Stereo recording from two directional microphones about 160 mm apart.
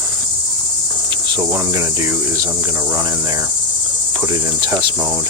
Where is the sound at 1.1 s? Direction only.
20° right (ahead or behind).